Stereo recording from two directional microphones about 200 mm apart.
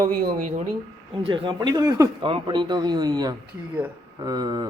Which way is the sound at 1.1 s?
25° right (ahead or behind).